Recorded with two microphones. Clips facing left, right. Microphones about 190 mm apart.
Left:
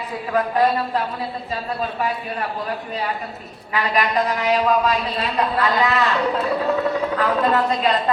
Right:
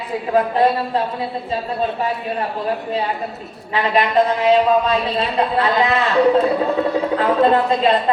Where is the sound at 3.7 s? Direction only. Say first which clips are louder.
Right 4 dB; 30° right (ahead or behind).